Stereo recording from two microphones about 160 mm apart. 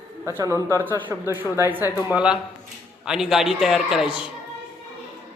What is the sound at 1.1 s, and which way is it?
Speech, 20° left (ahead or behind).